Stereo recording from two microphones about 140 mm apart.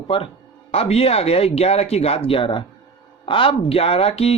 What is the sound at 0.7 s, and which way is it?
Speech, 45° left (ahead or behind).